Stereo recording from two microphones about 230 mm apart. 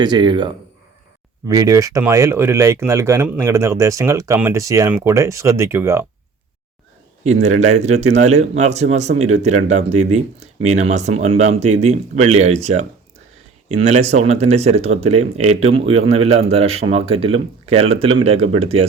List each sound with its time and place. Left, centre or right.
0.0 s speech: centre
7.7 s speech: right